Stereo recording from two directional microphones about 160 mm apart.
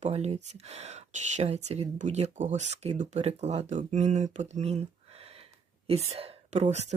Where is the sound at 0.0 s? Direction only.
40° right (ahead or behind).